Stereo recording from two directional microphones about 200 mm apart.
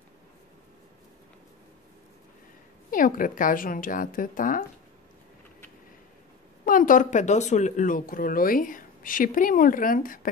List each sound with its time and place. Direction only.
2.9 s speech: 45° left (ahead or behind)
6.6 s speech: 40° left (ahead or behind)